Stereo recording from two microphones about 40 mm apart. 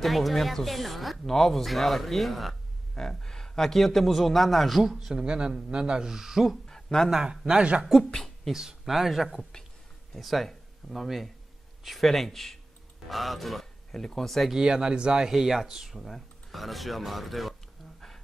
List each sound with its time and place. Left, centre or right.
0.0 s a man's voice: centre
2.9 s a man's voice: centre
5.0 s speech: centre
6.1 s speech: centre
6.7 s a sound: centre
7.1 s speech: centre
8.0 s speech: centre
8.5 s a man's voice: centre
14.5 s speech: centre
15.3 s speech: centre
16.0 s a man's voice: centre